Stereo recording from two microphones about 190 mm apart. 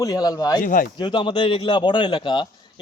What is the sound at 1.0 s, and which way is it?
Speech, 25° left (ahead or behind).